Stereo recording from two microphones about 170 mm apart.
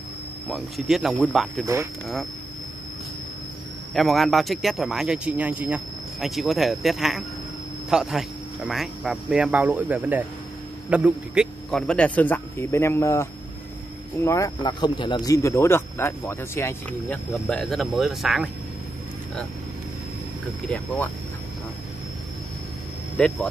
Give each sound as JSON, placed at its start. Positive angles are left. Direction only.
{"t": 0.5, "sound": "speech", "side_deg": 0}
{"t": 3.9, "sound": "a man's voice", "side_deg": 0}
{"t": 11.8, "sound": "speech", "side_deg": 5}
{"t": 17.3, "sound": "speech", "side_deg": 0}
{"t": 20.6, "sound": "speech", "side_deg": 5}
{"t": 23.1, "sound": "speech", "side_deg": 5}